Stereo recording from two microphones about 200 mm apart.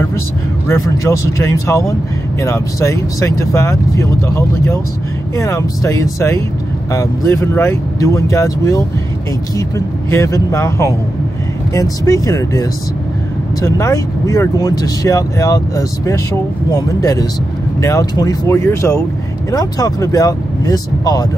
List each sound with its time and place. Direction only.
0.7 s speech: 15° left (ahead or behind)